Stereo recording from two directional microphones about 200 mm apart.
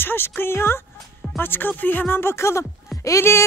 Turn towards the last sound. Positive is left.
turn(degrees=15)  # may be behind; listen again after turning